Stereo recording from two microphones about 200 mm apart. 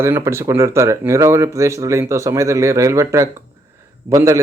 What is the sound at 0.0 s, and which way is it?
Speech, 15° right (ahead or behind).